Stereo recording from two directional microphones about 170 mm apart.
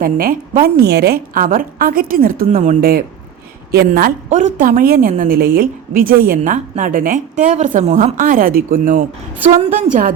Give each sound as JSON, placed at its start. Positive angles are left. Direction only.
{"t": 0.0, "sound": "a woman's voice", "side_deg": -55}
{"t": 2.5, "sound": "a woman's voice", "side_deg": -45}